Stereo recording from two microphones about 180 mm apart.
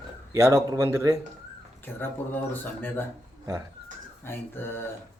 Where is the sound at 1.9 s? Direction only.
10° left (ahead or behind).